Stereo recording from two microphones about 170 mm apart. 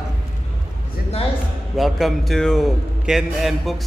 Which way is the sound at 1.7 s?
Centre (ahead or behind).